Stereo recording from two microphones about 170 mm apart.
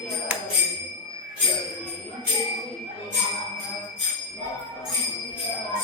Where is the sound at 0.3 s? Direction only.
10° right (ahead or behind).